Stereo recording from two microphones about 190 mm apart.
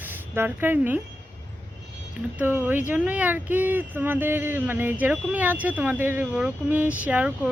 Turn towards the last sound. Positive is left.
turn(degrees=-5)  # may be behind; listen again after turning